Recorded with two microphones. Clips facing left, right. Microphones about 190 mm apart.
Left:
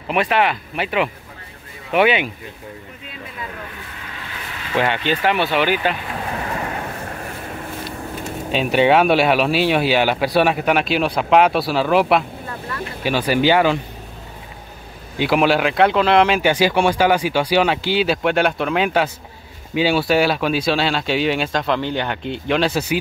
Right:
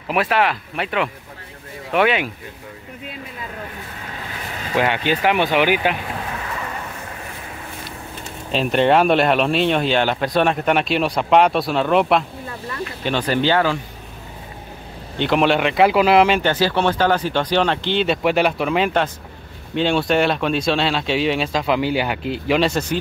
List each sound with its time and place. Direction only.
0.1 s speech: centre (ahead or behind)
4.7 s speech: 10° right (ahead or behind)
7.1 s vehicle: 50° left (ahead or behind)
8.5 s speech: 5° left (ahead or behind)
15.1 s speech: 5° left (ahead or behind)
16.4 s speech: 15° left (ahead or behind)